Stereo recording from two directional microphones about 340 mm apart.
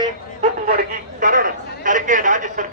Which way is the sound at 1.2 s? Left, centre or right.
Right.